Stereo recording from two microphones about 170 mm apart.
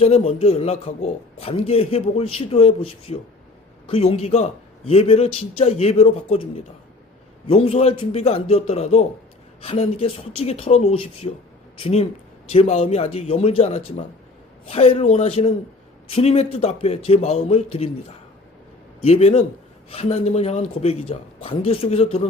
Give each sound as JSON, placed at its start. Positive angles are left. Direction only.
{"t": 0.0, "sound": "a man's voice", "side_deg": 40}
{"t": 19.0, "sound": "a man's voice", "side_deg": 35}